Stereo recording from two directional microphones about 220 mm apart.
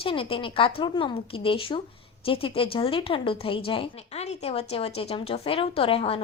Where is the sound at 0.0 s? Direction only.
25° left (ahead or behind).